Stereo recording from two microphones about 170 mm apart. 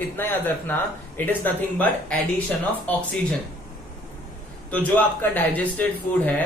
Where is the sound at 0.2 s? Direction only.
10° left (ahead or behind).